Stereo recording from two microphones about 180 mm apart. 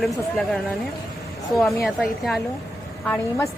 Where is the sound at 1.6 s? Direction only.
Centre (ahead or behind).